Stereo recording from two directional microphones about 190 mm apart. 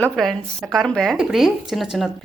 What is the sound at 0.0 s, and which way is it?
Speech, centre (ahead or behind).